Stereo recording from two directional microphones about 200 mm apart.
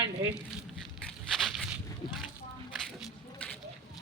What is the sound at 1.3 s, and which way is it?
Walk, centre (ahead or behind).